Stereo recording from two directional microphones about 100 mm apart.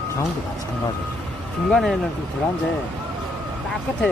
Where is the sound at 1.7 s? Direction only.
Centre (ahead or behind).